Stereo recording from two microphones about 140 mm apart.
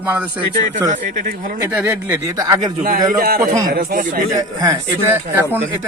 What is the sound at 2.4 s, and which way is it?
Speech, 25° right (ahead or behind).